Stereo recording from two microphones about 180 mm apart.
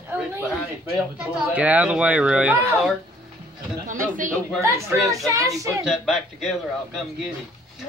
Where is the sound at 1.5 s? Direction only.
10° right (ahead or behind).